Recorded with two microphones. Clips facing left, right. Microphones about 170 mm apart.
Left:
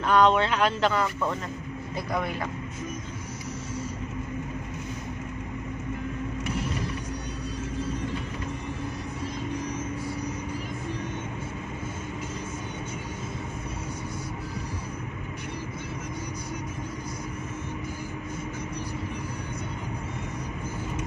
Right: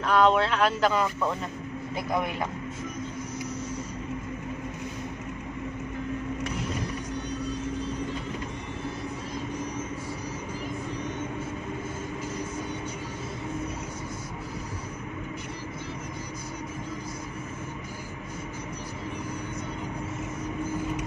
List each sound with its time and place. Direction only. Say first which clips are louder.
0.0 s speech: left 1 dB; 5° right (ahead or behind)
2.0 s speech: right 1 dB; 20° right (ahead or behind)